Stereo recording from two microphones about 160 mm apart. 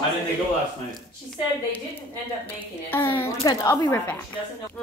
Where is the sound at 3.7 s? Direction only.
15° left (ahead or behind).